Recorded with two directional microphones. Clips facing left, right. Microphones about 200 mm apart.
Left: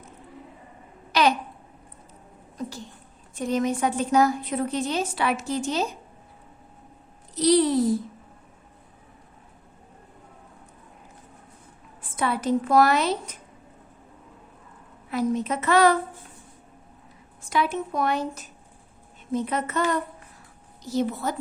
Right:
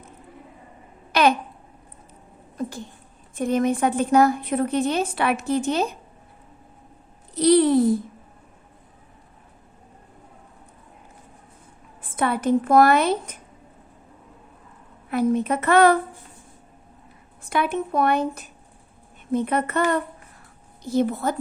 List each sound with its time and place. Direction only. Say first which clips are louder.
1.1 s babbling: right 3 dB; 55° right (ahead or behind)
2.6 s a sound: right 4 dB; 50° right (ahead or behind)
3.3 s a woman's voice: right 3 dB; 55° right (ahead or behind)
7.3 s a woman's voice: right 3 dB; 55° right (ahead or behind)
12.1 s a woman's voice: right 3 dB; 55° right (ahead or behind)
15.1 s a woman's voice: right 4 dB; 55° right (ahead or behind)
17.4 s a woman's voice: right 2 dB; 60° right (ahead or behind)